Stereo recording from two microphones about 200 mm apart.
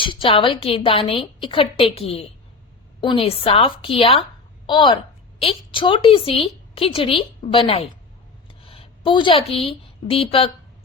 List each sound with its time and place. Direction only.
0.0 s a woman's voice: 25° left (ahead or behind)